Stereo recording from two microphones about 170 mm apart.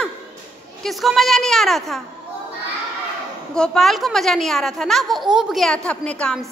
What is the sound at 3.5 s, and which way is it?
A man's voice, 5° left (ahead or behind).